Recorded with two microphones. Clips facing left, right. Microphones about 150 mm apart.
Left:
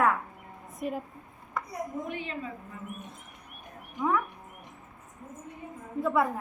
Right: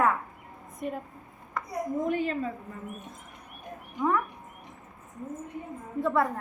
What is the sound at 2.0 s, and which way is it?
Speech, 45° right (ahead or behind).